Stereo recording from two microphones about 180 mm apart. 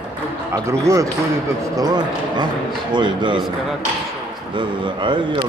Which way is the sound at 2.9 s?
25° right (ahead or behind).